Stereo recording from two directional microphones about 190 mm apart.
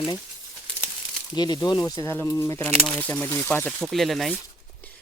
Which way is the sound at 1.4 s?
20° left (ahead or behind).